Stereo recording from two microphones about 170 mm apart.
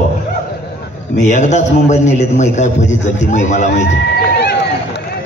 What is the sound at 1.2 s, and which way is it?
A man's voice, 45° left (ahead or behind).